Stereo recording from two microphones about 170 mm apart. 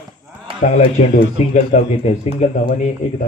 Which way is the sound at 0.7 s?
40° left (ahead or behind).